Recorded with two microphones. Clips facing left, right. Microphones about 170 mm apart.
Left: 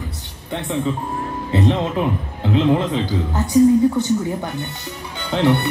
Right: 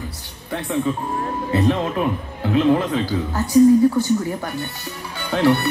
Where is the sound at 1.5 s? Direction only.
20° left (ahead or behind).